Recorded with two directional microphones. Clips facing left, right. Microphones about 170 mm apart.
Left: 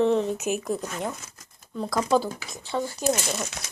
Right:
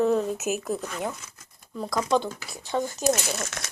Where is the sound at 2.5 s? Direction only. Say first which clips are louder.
Right 2 dB; 15° right (ahead or behind).